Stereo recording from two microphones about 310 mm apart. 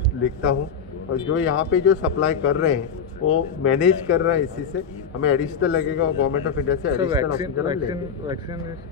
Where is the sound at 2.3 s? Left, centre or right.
Left.